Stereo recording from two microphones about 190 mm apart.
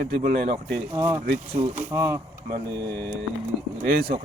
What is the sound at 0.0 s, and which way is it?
Speech, 45° right (ahead or behind).